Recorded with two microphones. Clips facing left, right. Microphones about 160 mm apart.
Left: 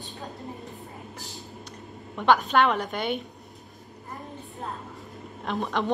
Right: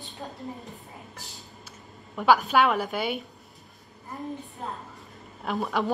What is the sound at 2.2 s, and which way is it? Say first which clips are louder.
A woman's voice: even; 5° right (ahead or behind).